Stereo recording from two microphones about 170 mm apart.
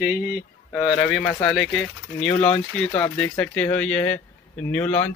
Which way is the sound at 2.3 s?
35° left (ahead or behind).